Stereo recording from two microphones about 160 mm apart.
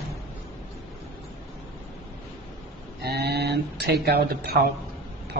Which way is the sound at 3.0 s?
90° right.